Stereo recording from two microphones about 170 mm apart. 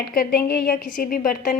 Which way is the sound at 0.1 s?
60° left (ahead or behind).